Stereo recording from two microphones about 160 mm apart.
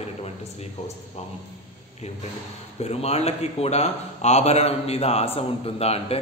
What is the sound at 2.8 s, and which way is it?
A man's voice, 40° left (ahead or behind).